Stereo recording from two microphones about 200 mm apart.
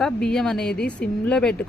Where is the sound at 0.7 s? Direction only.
55° left (ahead or behind).